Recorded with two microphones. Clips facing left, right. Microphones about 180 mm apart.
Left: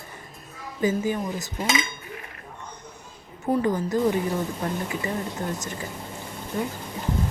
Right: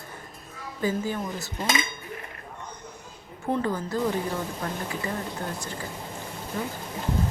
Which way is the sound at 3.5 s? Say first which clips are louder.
Left 4 dB; 15° left (ahead or behind).